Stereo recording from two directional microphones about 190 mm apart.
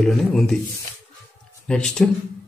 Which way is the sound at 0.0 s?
Centre (ahead or behind).